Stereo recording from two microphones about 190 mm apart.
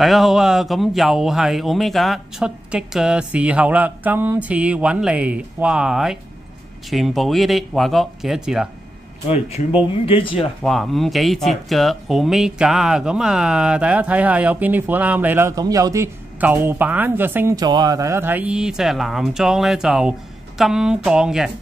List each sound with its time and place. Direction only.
0.0 s speech: centre (ahead or behind)
9.3 s speech: 30° left (ahead or behind)
10.6 s speech: centre (ahead or behind)